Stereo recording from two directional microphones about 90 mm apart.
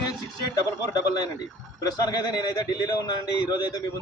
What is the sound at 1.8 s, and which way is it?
A man's voice, 50° left (ahead or behind).